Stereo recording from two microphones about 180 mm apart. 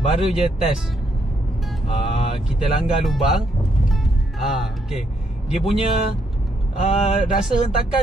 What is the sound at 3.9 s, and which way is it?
Music, centre (ahead or behind).